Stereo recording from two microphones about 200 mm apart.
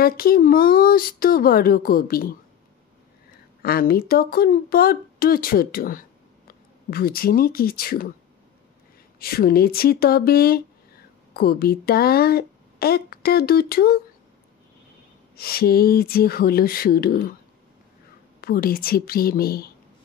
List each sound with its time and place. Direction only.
0.0 s speech: 50° left (ahead or behind)
3.6 s speech: 50° left (ahead or behind)
9.2 s speech: 50° left (ahead or behind)
15.3 s speech: 50° left (ahead or behind)
18.4 s speech: 45° left (ahead or behind)